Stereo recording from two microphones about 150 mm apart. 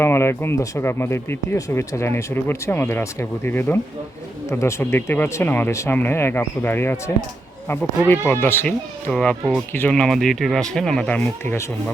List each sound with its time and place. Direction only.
0.0 s speech: 15° left (ahead or behind)
9.0 s speech: 5° left (ahead or behind)